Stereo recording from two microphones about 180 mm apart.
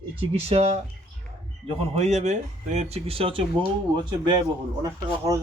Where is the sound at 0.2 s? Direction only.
30° right (ahead or behind).